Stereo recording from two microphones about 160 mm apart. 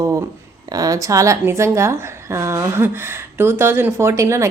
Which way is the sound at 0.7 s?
20° right (ahead or behind).